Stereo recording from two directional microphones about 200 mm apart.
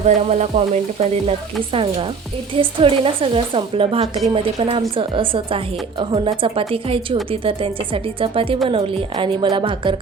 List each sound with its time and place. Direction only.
0.0 s speech: 35° right (ahead or behind)